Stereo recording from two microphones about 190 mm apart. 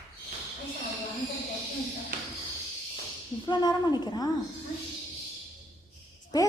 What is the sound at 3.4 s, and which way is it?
Speech, 20° left (ahead or behind).